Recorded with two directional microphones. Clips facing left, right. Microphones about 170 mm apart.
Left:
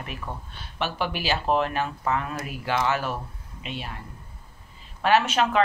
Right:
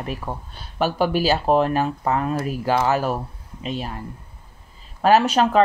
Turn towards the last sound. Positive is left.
turn(degrees=-35)  # may be behind; listen again after turning